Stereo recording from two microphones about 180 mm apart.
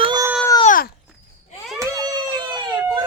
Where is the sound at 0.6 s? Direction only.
50° left (ahead or behind).